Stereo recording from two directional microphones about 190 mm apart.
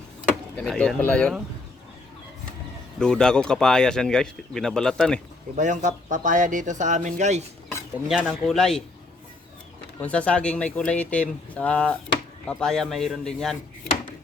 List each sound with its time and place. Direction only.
0.5 s speech: 5° left (ahead or behind)
3.0 s speech: 5° left (ahead or behind)
5.5 s speech: 40° right (ahead or behind)
8.0 s speech: centre (ahead or behind)
10.0 s speech: 5° left (ahead or behind)